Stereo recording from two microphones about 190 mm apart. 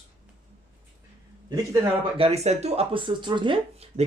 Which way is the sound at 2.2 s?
35° right (ahead or behind).